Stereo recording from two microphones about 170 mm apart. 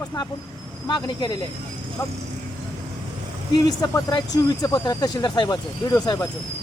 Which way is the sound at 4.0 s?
20° left (ahead or behind).